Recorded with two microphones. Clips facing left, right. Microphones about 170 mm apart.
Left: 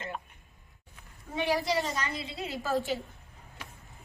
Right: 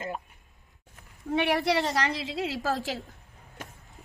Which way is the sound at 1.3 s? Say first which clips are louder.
Right 4 dB; 70° right (ahead or behind).